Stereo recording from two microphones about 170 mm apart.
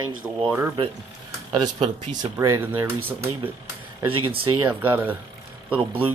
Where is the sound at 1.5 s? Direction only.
25° right (ahead or behind).